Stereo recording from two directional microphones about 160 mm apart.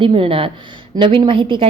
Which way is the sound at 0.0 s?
35° right (ahead or behind).